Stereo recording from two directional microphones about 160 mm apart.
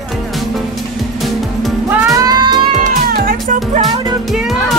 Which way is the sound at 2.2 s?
25° right (ahead or behind).